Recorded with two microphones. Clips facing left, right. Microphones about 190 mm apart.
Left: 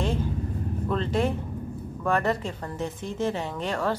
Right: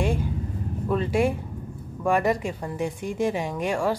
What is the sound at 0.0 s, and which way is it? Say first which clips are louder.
Vehicle: right 2 dB; 10° right (ahead or behind).